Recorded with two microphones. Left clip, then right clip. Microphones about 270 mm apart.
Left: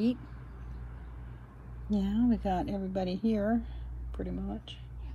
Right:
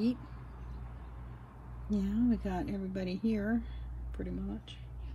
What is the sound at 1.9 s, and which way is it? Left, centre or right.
A woman's voice, centre.